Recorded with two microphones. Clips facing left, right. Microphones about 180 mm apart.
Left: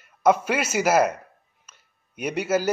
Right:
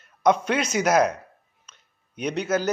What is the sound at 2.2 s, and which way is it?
Speech, 10° left (ahead or behind).